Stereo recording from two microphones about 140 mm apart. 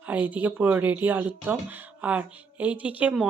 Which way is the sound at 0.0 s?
10° right (ahead or behind).